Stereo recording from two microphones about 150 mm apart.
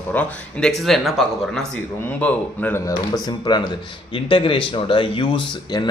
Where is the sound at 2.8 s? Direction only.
25° left (ahead or behind).